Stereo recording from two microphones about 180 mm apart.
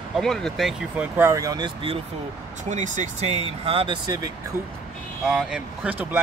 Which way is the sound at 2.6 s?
40° right (ahead or behind).